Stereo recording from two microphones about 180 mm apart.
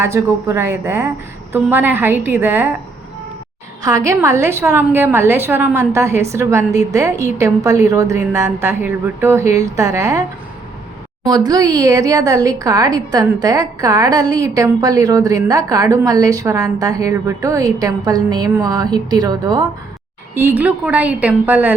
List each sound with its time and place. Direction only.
0.0 s a woman's voice: 15° right (ahead or behind)
3.8 s a woman's voice: 20° right (ahead or behind)
11.3 s a woman's voice: 20° right (ahead or behind)
20.3 s a woman's voice: 10° right (ahead or behind)